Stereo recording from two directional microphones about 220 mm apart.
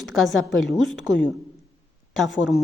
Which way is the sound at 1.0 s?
55° left (ahead or behind).